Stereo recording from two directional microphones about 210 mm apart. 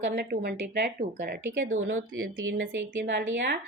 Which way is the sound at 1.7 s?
65° right (ahead or behind).